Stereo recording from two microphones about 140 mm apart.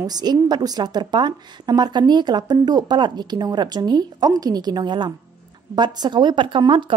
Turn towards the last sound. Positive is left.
turn(degrees=-35)  # may be behind; listen again after turning